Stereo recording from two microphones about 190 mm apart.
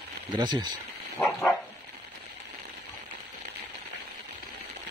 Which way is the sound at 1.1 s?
15° left (ahead or behind).